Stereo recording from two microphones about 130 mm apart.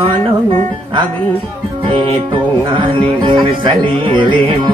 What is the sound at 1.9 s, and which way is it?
Speech, 40° right (ahead or behind).